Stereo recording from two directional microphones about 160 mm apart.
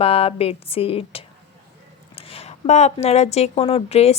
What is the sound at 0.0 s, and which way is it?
A woman's voice, 35° left (ahead or behind).